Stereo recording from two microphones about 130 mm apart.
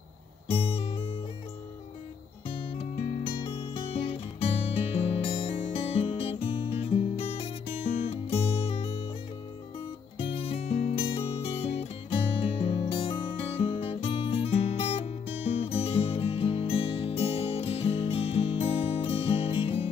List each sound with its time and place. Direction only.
0.5 s music: 45° left (ahead or behind)
2.4 s music: 45° left (ahead or behind)
10.1 s music: 45° left (ahead or behind)